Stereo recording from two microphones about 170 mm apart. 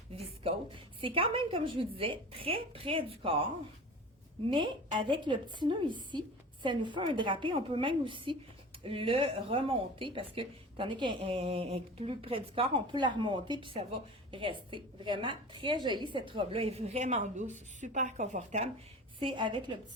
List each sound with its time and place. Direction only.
0.2 s a woman's voice: 35° right (ahead or behind)
19.2 s a woman's voice: 30° right (ahead or behind)